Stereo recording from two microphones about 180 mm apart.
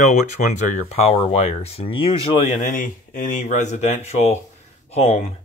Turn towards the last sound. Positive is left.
turn(degrees=35)  # may be behind; listen again after turning